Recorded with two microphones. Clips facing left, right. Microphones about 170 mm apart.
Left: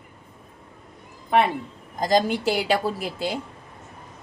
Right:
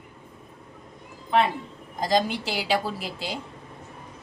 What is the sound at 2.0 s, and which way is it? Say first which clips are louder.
A woman's voice: left 3 dB; 50° left (ahead or behind).